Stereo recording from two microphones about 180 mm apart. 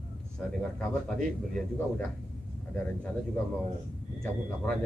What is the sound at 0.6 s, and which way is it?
A man's voice, 5° left (ahead or behind).